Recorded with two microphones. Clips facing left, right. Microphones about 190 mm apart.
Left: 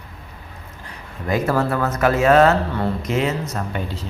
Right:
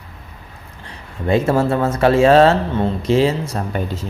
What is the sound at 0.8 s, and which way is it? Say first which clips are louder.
Speech: right 5 dB; 25° right (ahead or behind).